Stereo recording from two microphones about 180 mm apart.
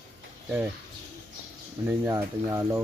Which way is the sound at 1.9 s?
15° right (ahead or behind).